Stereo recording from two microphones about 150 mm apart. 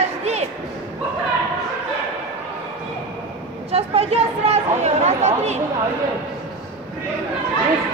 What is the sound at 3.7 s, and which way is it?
Speech, 45° right (ahead or behind).